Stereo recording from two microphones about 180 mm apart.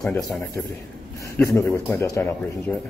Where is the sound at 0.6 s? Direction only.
5° left (ahead or behind).